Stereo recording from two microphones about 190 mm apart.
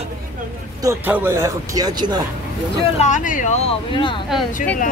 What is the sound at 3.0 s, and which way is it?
Speech, 40° left (ahead or behind).